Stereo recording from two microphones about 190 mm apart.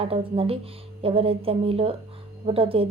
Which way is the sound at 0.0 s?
30° right (ahead or behind).